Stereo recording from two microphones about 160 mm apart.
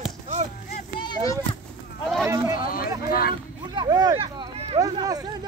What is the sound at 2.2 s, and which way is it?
Speech, 15° right (ahead or behind).